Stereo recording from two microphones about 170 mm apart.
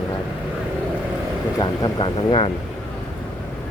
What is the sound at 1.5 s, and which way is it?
Speech, 25° left (ahead or behind).